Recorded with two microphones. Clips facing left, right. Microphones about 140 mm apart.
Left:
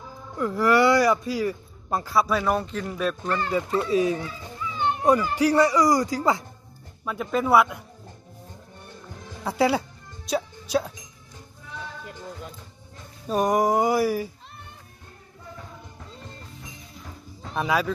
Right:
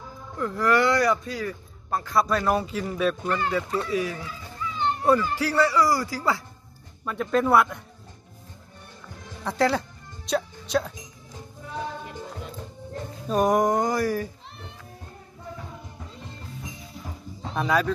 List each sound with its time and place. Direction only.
0.4 s speech: 10° left (ahead or behind)
2.1 s speech: centre (ahead or behind)
3.8 s speech: 25° left (ahead or behind)
7.1 s speech: 5° left (ahead or behind)
9.4 s music: 10° left (ahead or behind)
13.3 s speech: centre (ahead or behind)
17.6 s speech: 5° left (ahead or behind)